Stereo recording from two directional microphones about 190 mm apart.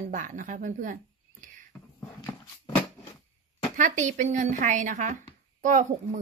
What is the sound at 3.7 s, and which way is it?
A woman's voice, 40° right (ahead or behind).